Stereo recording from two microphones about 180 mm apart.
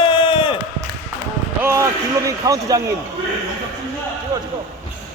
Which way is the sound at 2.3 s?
20° right (ahead or behind).